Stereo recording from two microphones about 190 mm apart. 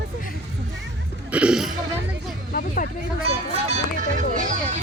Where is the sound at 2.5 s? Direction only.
45° left (ahead or behind).